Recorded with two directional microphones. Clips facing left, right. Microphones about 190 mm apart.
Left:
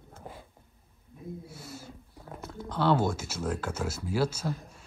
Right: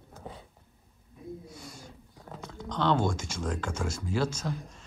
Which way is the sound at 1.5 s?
5° left (ahead or behind).